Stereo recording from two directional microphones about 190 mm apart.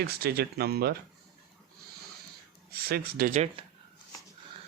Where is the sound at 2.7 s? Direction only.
55° right (ahead or behind).